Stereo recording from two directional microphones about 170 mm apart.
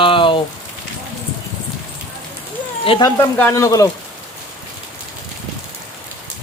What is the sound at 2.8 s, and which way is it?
Speech, 30° left (ahead or behind).